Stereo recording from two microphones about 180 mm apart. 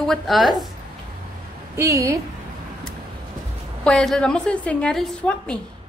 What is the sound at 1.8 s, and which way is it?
Speech, 15° right (ahead or behind).